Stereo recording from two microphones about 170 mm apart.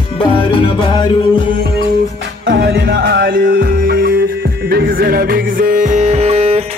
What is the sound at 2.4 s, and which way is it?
Music, 75° right (ahead or behind).